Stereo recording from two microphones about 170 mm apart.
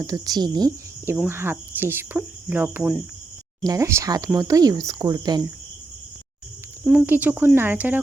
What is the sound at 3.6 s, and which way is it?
Speech, 20° right (ahead or behind).